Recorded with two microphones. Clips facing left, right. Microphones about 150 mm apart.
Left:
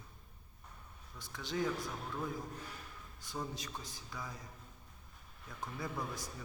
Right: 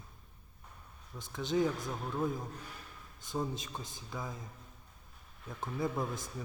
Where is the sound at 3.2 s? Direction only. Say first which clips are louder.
Right 6 dB; 20° right (ahead or behind).